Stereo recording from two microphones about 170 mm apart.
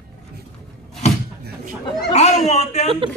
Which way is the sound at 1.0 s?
40° left (ahead or behind).